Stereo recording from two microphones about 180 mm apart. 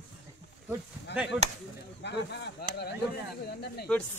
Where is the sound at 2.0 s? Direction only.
70° left (ahead or behind).